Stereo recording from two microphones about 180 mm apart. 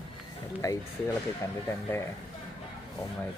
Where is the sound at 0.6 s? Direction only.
20° left (ahead or behind).